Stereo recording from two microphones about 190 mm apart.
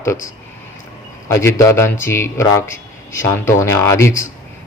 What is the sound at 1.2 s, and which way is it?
A man's voice, 15° left (ahead or behind).